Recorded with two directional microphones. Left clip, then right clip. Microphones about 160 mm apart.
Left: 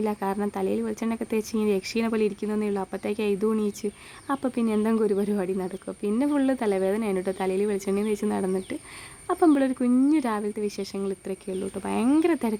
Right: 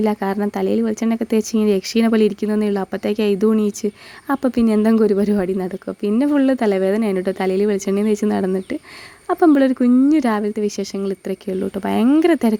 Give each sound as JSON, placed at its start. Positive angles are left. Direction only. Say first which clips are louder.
{"t": 0.0, "sound": "speech", "louder": "right 7 dB", "side_deg": -30}